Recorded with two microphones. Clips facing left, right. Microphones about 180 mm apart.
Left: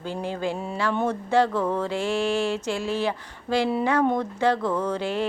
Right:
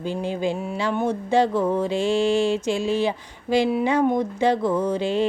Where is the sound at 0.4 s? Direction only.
15° right (ahead or behind).